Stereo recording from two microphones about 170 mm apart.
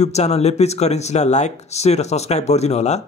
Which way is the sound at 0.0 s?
40° left (ahead or behind).